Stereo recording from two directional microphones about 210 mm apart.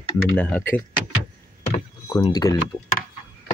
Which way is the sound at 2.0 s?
20° left (ahead or behind).